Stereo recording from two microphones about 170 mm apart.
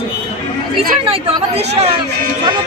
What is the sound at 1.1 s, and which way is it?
Speech, 35° right (ahead or behind).